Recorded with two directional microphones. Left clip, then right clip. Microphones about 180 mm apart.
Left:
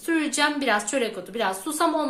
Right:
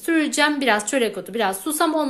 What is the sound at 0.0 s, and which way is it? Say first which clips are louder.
A woman's voice: right 4 dB; 40° right (ahead or behind).